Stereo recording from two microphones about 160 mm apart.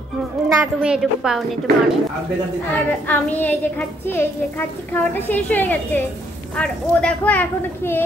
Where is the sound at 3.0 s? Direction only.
10° left (ahead or behind).